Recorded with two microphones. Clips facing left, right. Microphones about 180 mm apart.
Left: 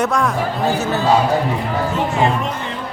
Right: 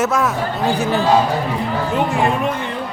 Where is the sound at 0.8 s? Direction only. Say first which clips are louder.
Right 2 dB; 15° right (ahead or behind).